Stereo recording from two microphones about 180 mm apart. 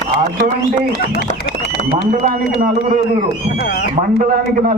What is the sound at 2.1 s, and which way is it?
Speech, 50° right (ahead or behind).